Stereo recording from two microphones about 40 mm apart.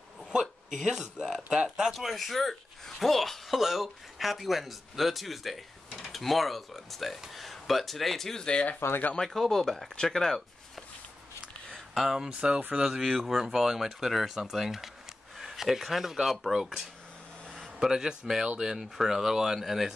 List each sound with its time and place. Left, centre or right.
0.7 s speech: centre
2.0 s speech: centre
8.4 s speech: left
8.7 s speech: left
9.1 s speech: centre
11.9 s speech: centre
12.3 s speech: right
13.2 s speech: centre
17.7 s speech: centre